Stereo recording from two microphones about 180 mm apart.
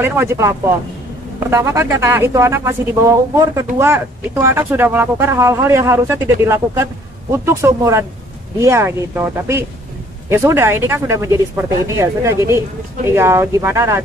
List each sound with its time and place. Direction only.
0.0 s speech: 15° right (ahead or behind)